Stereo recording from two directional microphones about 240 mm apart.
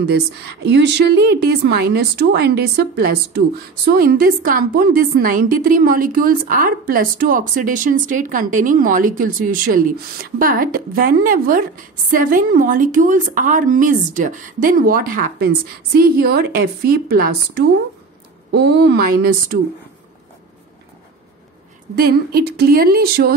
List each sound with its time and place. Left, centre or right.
0.0 s a woman's voice: right
21.9 s a woman's voice: right